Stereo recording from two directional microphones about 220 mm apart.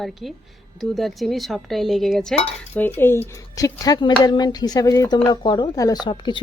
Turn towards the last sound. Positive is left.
turn(degrees=20)  # may be behind; listen again after turning